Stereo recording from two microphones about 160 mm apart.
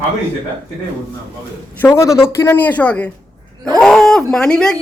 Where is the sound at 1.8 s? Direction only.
20° left (ahead or behind).